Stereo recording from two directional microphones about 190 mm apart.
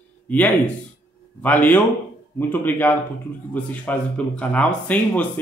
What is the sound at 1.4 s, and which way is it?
A man's voice, 10° left (ahead or behind).